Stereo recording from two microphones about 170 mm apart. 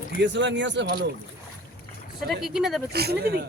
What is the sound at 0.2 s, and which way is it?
Speech, 90° right.